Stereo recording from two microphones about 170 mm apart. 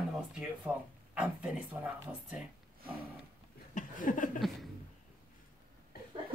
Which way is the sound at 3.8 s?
50° left (ahead or behind).